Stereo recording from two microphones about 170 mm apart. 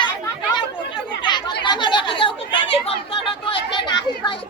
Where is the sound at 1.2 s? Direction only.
25° left (ahead or behind).